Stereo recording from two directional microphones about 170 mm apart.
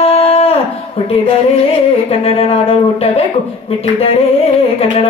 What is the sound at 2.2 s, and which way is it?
Speech, 35° left (ahead or behind).